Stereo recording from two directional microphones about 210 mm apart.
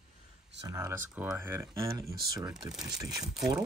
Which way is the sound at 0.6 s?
15° right (ahead or behind).